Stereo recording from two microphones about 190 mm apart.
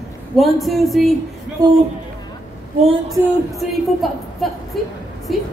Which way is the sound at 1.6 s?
20° right (ahead or behind).